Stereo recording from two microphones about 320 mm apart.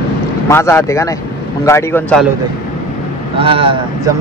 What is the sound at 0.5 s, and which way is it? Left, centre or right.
Speech, centre.